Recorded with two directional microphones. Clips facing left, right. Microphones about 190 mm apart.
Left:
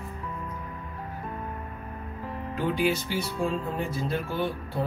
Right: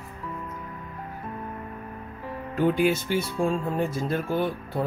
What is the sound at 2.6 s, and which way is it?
Speech, 50° right (ahead or behind).